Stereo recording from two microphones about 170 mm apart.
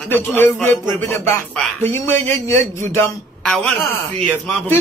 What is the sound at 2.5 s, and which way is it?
A man's voice, 15° left (ahead or behind).